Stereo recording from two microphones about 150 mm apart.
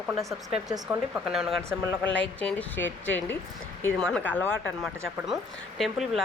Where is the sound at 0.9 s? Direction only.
5° right (ahead or behind).